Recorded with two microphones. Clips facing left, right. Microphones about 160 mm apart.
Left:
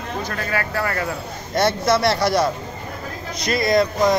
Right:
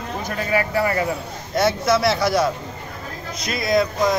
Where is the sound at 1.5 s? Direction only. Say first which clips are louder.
Even; centre (ahead or behind).